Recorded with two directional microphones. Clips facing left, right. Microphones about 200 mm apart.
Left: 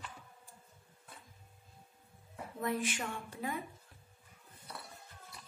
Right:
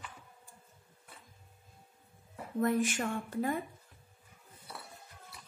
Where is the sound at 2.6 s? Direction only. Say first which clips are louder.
Right 6 dB; 45° right (ahead or behind).